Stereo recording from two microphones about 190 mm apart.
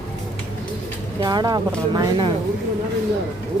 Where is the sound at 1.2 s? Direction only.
20° right (ahead or behind).